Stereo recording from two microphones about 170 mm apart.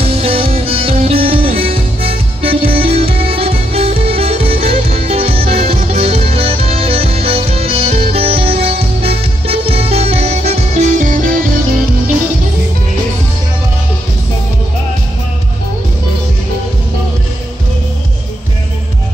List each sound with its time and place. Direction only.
0.0 s music: 35° right (ahead or behind); by 11.3 s 50° right (ahead or behind)